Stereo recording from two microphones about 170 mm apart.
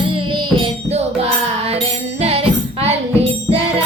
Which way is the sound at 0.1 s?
30° right (ahead or behind).